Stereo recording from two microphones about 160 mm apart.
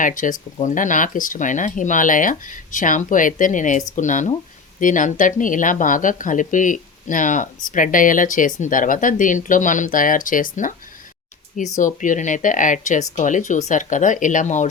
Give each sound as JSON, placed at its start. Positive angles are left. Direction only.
{"t": 0.0, "sound": "speech", "side_deg": 55}
{"t": 11.8, "sound": "speech", "side_deg": 55}